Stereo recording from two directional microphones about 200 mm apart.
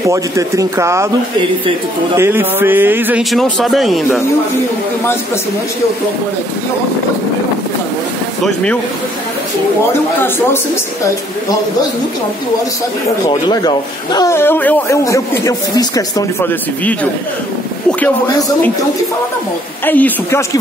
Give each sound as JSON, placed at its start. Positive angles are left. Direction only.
{"t": 0.1, "sound": "a man's voice", "side_deg": -15}
{"t": 2.1, "sound": "a man's voice", "side_deg": -10}
{"t": 13.3, "sound": "speech", "side_deg": 20}
{"t": 19.9, "sound": "speech", "side_deg": 10}